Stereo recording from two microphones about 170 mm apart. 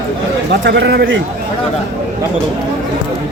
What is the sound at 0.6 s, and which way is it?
Speech, 90° right.